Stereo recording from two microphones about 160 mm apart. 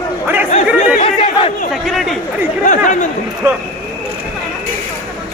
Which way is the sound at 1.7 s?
Centre (ahead or behind).